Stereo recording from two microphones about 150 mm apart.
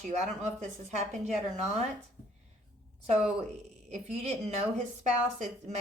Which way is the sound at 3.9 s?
45° right (ahead or behind).